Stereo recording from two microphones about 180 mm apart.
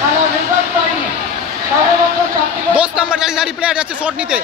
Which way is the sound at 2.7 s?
5° right (ahead or behind).